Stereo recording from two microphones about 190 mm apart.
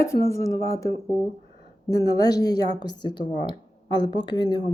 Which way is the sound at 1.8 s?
20° left (ahead or behind).